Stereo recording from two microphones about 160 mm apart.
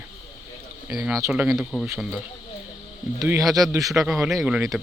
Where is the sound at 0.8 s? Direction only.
5° right (ahead or behind).